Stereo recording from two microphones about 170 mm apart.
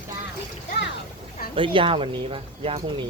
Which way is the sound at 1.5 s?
30° right (ahead or behind).